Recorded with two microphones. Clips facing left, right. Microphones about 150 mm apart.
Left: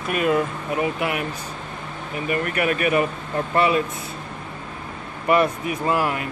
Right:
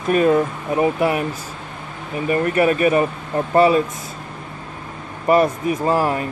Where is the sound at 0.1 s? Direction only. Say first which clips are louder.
Right 5 dB; 35° right (ahead or behind).